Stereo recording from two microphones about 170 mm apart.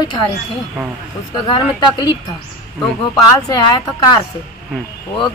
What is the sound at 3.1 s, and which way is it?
A woman's voice, 20° left (ahead or behind).